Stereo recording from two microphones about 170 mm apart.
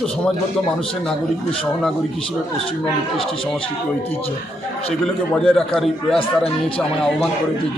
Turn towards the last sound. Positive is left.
turn(degrees=5)  # may be behind; listen again after turning